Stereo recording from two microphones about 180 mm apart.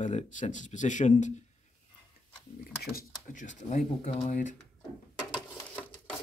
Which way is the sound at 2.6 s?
55° left (ahead or behind).